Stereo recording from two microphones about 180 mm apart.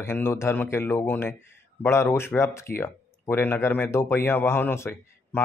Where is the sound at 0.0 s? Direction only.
15° left (ahead or behind).